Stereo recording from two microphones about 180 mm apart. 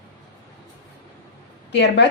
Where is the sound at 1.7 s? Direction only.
75° left (ahead or behind).